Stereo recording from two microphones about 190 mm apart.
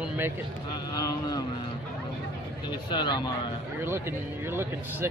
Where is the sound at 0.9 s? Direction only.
20° left (ahead or behind).